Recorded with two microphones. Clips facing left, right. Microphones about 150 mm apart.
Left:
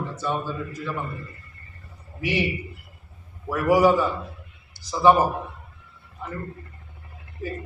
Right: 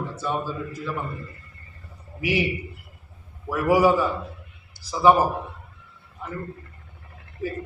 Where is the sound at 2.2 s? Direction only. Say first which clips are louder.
Right 1 dB; 10° right (ahead or behind).